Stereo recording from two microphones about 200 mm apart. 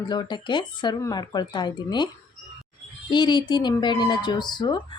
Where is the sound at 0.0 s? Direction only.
20° left (ahead or behind).